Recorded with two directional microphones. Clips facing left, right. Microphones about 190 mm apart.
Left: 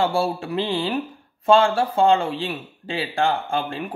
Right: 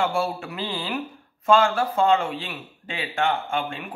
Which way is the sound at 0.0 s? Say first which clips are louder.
Left 3 dB; 30° left (ahead or behind).